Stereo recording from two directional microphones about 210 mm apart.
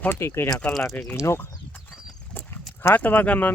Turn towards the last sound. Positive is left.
turn(degrees=5)  # may be behind; listen again after turning